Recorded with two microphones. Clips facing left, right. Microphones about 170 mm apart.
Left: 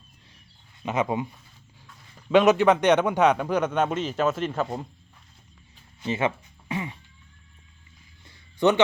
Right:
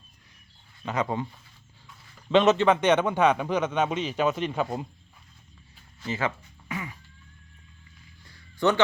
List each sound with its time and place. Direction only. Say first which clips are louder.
0.8 s a man's voice: left 2 dB; 20° left (ahead or behind)
2.3 s a man's voice: left 2 dB; 10° left (ahead or behind)
3.7 s speech: left 2 dB; 10° right (ahead or behind)
3.9 s speech: left 1 dB; 5° left (ahead or behind)
4.5 s speech: even; 10° right (ahead or behind)
6.0 s music: left 4 dB; 25° left (ahead or behind)
8.2 s a sound: left 3 dB; 20° left (ahead or behind)